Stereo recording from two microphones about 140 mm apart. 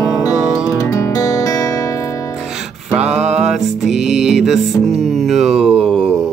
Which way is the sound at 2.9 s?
5° right (ahead or behind).